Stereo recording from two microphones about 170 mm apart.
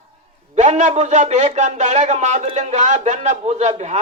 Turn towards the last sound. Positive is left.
turn(degrees=-40)  # may be behind; listen again after turning